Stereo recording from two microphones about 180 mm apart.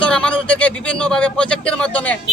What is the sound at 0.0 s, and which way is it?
A man's voice, 5° left (ahead or behind).